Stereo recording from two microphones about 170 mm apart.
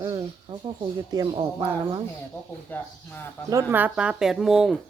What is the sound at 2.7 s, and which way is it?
Speech, 10° left (ahead or behind).